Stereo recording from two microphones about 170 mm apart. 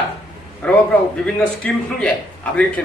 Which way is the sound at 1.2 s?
5° left (ahead or behind).